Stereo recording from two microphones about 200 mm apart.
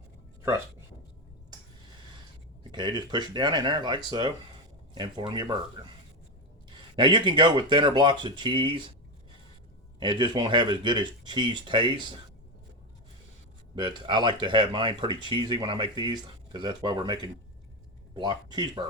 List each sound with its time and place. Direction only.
2.7 s speech: 20° right (ahead or behind)
6.7 s speech: 25° right (ahead or behind)
10.0 s speech: 25° right (ahead or behind)
13.7 s speech: 25° right (ahead or behind)